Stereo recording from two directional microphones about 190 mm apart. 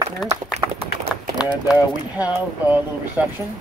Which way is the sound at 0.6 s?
15° right (ahead or behind).